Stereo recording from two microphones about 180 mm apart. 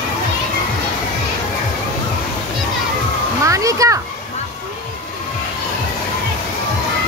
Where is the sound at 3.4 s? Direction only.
15° right (ahead or behind).